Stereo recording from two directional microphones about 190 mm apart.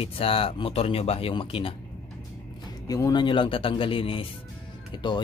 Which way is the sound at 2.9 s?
20° left (ahead or behind).